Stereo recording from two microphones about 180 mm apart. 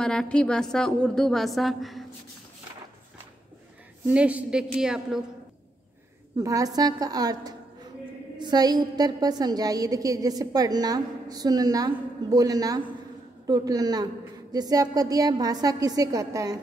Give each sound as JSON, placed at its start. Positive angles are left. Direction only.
{"t": 0.0, "sound": "a woman's voice", "side_deg": 5}
{"t": 4.1, "sound": "a woman's voice", "side_deg": -5}
{"t": 6.3, "sound": "a woman's voice", "side_deg": -20}